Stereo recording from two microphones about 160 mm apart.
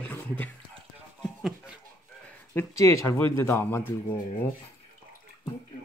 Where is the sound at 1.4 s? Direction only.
5° right (ahead or behind).